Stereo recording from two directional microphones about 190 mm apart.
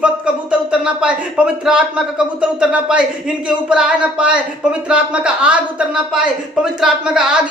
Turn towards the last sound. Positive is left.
turn(degrees=-5)  # may be behind; listen again after turning